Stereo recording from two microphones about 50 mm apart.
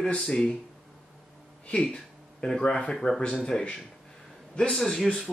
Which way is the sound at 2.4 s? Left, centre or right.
Centre.